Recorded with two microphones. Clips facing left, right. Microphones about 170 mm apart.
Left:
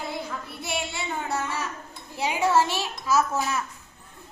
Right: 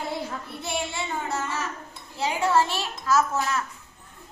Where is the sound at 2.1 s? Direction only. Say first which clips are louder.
Even; 10° left (ahead or behind).